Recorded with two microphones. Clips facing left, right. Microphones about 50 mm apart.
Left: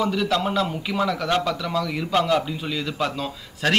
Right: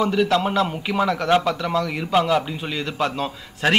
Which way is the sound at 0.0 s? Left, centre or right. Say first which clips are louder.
Right 3 dB; centre.